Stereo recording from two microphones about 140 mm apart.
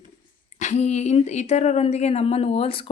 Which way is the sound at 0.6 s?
55° left (ahead or behind).